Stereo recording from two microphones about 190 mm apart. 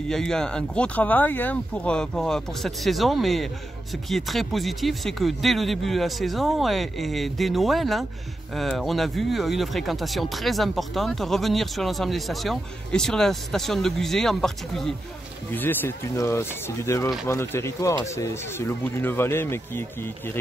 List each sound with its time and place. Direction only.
0.1 s speech: 5° left (ahead or behind)